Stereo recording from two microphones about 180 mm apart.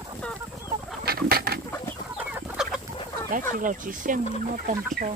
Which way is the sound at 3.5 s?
50° right (ahead or behind).